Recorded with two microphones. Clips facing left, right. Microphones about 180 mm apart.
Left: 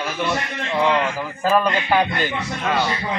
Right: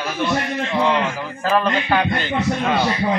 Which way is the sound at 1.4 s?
10° left (ahead or behind).